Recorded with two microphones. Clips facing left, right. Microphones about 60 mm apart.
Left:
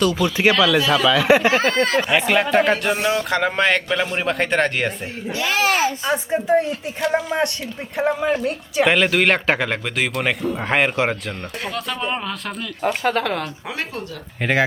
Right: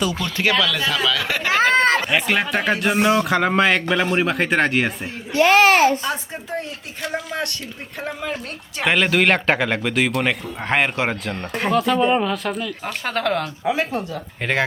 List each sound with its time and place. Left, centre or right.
0.2 s speech: centre
1.7 s speech: right
2.0 s speech: centre
2.9 s speech: centre
3.2 s speech: centre
5.3 s a child's voice: right
6.1 s speech: left
8.4 s speech: centre